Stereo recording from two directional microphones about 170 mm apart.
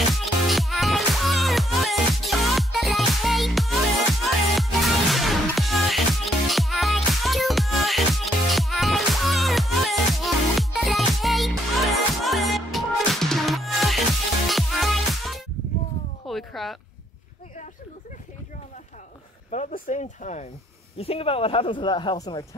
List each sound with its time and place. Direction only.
0.1 s music: centre (ahead or behind)
16.3 s a sound: centre (ahead or behind)
19.5 s speech: 45° left (ahead or behind); by 22.6 s 20° left (ahead or behind)